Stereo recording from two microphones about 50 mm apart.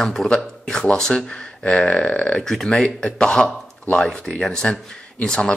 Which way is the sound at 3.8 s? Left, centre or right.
Left.